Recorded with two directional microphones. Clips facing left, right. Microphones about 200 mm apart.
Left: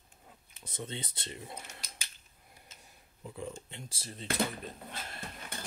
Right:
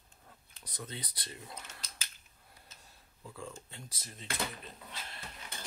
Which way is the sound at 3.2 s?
20° left (ahead or behind).